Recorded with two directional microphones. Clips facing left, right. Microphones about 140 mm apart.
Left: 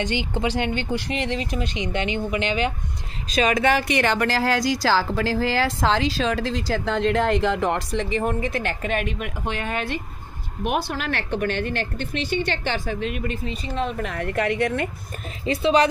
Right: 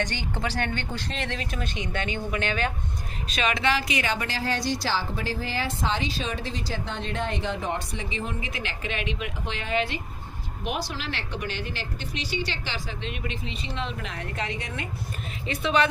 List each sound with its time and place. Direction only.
0.0 s speech: 20° left (ahead or behind)
1.6 s speech: 50° right (ahead or behind)
1.9 s speech: 15° left (ahead or behind)
3.3 s speech: 40° left (ahead or behind); by 14.8 s 65° left (ahead or behind)
15.4 s speech: 35° left (ahead or behind)